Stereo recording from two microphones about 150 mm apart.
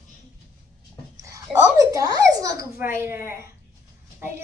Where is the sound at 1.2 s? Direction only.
20° right (ahead or behind).